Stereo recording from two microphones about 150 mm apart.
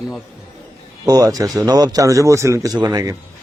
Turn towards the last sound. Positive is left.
turn(degrees=-25)  # may be behind; listen again after turning